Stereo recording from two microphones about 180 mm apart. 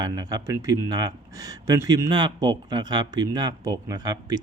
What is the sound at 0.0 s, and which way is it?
Speech, 20° right (ahead or behind).